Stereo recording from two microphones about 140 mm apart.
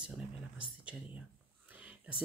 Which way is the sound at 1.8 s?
10° right (ahead or behind).